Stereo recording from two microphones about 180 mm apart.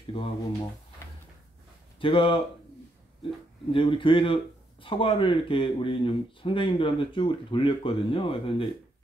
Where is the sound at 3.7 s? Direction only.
30° left (ahead or behind).